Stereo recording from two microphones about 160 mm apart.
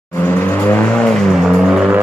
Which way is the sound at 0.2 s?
10° left (ahead or behind).